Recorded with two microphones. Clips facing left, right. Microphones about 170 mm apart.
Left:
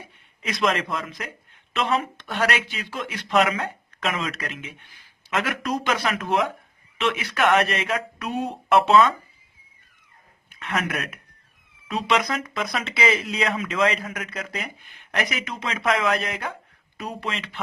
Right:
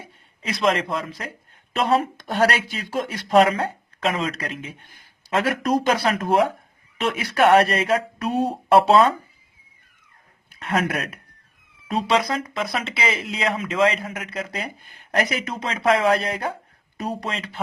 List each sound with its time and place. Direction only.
0.4 s speech: 30° right (ahead or behind)
10.5 s speech: 35° right (ahead or behind)